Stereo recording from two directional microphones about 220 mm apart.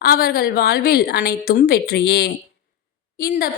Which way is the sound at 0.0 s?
45° left (ahead or behind).